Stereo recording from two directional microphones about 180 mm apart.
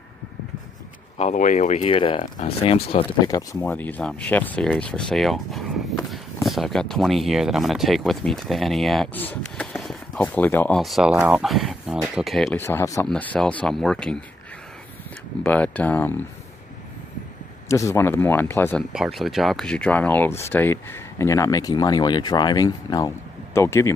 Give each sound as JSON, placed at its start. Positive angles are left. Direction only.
{"t": 1.1, "sound": "speech", "side_deg": 40}
{"t": 3.6, "sound": "speech", "side_deg": 10}
{"t": 10.8, "sound": "speech", "side_deg": 0}
{"t": 12.5, "sound": "speech", "side_deg": 15}
{"t": 15.4, "sound": "speech", "side_deg": 10}
{"t": 17.6, "sound": "speech", "side_deg": 15}
{"t": 18.9, "sound": "speech", "side_deg": 0}